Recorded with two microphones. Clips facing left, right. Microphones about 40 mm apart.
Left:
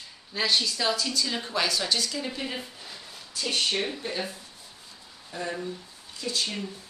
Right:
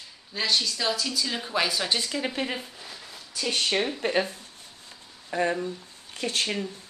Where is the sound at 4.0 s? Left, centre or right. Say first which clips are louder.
Right 7 dB; right.